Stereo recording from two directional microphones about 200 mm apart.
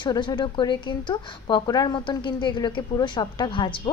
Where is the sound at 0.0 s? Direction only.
20° left (ahead or behind).